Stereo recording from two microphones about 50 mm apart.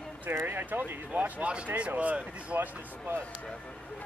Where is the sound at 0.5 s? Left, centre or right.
Right.